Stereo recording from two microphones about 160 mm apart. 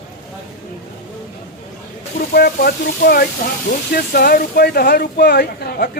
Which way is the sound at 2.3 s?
75° left (ahead or behind).